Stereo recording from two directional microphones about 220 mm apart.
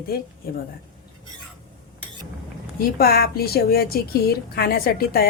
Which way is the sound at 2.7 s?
45° left (ahead or behind).